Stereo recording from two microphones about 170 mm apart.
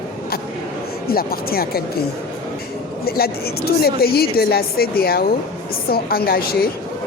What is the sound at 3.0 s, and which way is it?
A woman's voice, 65° left (ahead or behind).